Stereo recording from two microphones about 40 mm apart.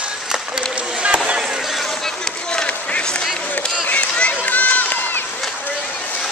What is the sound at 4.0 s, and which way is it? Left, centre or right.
Run, left.